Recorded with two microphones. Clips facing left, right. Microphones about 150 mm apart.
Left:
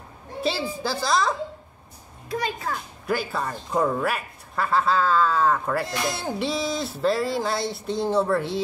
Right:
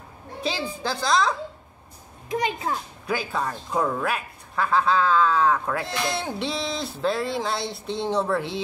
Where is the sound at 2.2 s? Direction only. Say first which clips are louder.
Right 2 dB; 20° right (ahead or behind).